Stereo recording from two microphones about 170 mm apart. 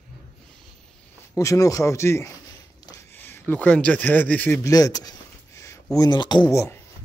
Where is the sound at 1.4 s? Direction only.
20° left (ahead or behind).